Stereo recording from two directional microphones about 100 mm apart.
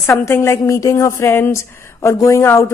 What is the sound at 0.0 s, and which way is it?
A woman's voice, 25° left (ahead or behind).